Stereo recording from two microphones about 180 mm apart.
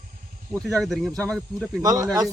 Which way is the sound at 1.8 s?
20° right (ahead or behind).